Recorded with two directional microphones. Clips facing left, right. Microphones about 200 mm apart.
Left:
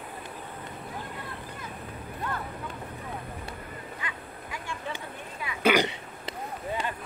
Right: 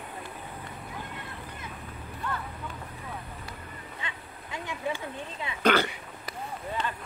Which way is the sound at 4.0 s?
25° right (ahead or behind).